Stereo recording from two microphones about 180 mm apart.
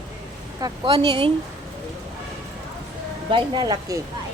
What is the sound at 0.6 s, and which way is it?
Speech, 25° right (ahead or behind).